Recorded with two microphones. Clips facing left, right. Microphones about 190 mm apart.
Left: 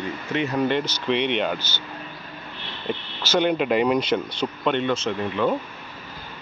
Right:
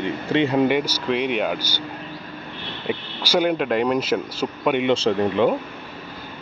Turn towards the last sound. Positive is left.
turn(degrees=-30)  # may be behind; listen again after turning